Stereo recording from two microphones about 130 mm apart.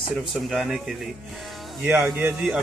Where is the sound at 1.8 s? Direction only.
15° right (ahead or behind).